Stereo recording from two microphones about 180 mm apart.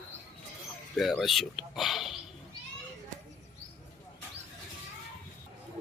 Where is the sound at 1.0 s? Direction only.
Centre (ahead or behind).